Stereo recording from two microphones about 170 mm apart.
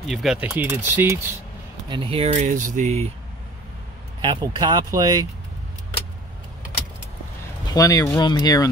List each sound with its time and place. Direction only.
0.0 s speech: centre (ahead or behind)
1.9 s speech: 30° right (ahead or behind)
4.2 s speech: 25° right (ahead or behind)
7.6 s speech: 20° left (ahead or behind)